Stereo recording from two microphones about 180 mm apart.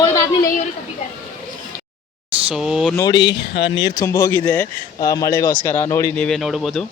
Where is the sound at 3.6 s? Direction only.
90° left.